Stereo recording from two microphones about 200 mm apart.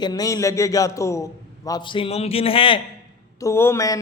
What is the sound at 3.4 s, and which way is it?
Speech, 15° left (ahead or behind).